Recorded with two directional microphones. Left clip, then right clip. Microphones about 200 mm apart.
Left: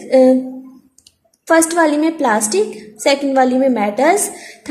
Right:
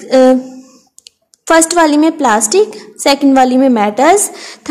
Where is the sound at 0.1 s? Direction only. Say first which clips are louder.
Right 3 dB; 25° right (ahead or behind).